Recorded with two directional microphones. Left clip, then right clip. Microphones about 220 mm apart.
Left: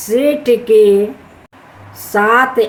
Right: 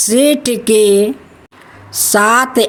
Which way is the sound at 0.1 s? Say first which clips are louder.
Left 1 dB; 55° right (ahead or behind).